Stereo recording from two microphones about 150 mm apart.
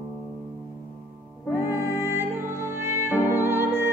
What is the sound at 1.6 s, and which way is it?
Music, 15° right (ahead or behind).